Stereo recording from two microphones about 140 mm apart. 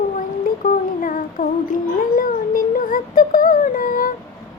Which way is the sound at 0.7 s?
75° left (ahead or behind).